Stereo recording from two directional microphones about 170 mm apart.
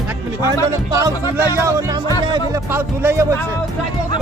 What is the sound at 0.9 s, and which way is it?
A man's voice, 15° right (ahead or behind).